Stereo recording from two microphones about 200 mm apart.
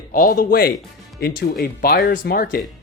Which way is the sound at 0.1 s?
45° left (ahead or behind).